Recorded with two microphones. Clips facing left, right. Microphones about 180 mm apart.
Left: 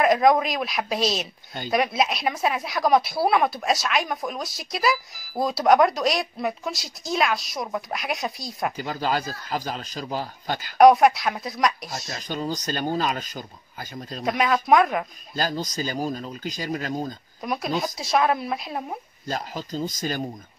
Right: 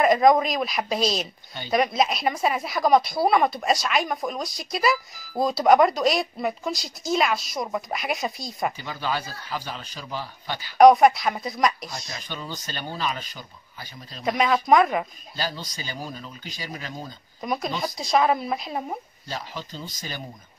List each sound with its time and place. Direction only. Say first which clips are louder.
0.0 s speech: right 1 dB; centre (ahead or behind)
8.8 s speech: left 3 dB; 40° left (ahead or behind)
10.8 s speech: right 1 dB; centre (ahead or behind)
12.2 s speech: left 7 dB; 40° left (ahead or behind)
14.2 s speech: right 1 dB; centre (ahead or behind)
15.3 s speech: left 5 dB; 45° left (ahead or behind)
17.4 s speech: left 1 dB; centre (ahead or behind)
19.2 s speech: left 8 dB; 45° left (ahead or behind)